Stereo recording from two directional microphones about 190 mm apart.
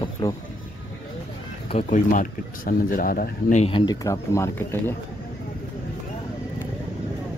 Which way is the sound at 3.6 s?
25° left (ahead or behind).